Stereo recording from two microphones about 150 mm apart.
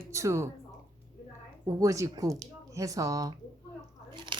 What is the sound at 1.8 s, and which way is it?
A woman's voice, 20° right (ahead or behind).